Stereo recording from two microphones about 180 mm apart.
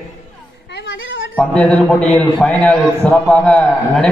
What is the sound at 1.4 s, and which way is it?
A man's voice, 5° left (ahead or behind).